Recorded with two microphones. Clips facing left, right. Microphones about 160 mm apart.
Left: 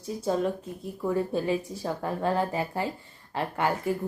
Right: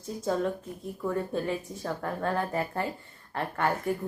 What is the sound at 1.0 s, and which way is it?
Speech, 10° left (ahead or behind).